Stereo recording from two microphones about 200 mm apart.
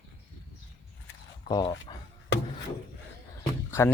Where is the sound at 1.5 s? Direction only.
20° left (ahead or behind).